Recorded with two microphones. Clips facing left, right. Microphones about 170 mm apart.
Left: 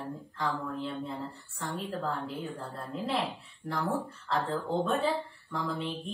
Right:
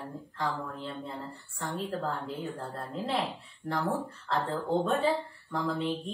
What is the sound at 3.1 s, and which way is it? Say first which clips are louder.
A woman's voice: even; centre (ahead or behind).